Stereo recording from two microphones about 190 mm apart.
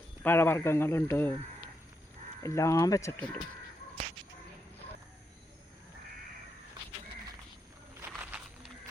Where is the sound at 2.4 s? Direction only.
15° left (ahead or behind).